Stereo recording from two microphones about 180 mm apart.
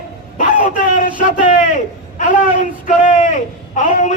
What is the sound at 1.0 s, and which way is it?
A man's voice, 45° left (ahead or behind).